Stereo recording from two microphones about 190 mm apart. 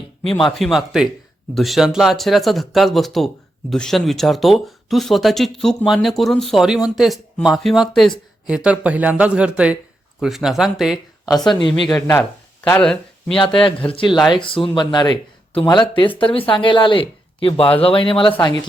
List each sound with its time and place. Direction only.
0.4 s speech: centre (ahead or behind)
11.8 s speech: 20° left (ahead or behind)
12.6 s speech: 5° left (ahead or behind)
13.6 s speech: 30° left (ahead or behind)